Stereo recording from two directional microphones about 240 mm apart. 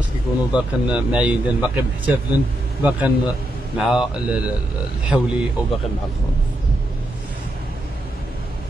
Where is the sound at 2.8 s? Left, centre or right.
Centre.